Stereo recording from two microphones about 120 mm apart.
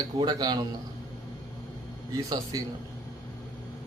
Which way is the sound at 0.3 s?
35° right (ahead or behind).